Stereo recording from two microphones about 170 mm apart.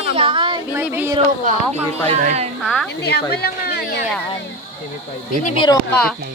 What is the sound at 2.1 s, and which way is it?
Speech, 40° right (ahead or behind).